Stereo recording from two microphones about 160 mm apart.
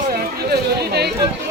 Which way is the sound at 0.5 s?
90° right.